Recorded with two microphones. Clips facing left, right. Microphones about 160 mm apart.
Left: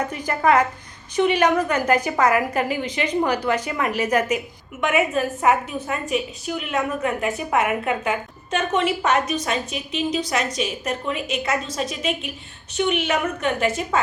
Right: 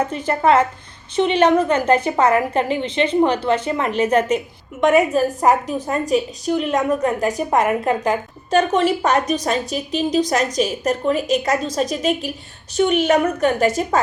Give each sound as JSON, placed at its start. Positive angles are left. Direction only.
{"t": 0.3, "sound": "a woman's voice", "side_deg": -25}